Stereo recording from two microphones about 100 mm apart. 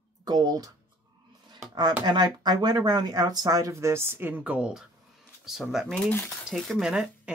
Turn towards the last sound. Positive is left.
turn(degrees=-5)  # may be behind; listen again after turning